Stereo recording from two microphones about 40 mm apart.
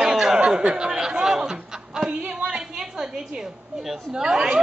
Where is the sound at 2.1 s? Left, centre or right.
Right.